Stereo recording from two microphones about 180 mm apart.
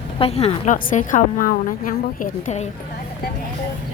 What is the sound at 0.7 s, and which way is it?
A woman's voice, 45° left (ahead or behind).